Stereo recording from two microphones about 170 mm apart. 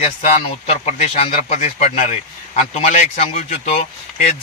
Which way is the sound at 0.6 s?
40° left (ahead or behind).